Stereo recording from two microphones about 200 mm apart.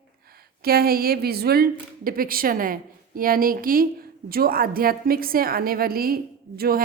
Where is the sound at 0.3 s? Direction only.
50° right (ahead or behind).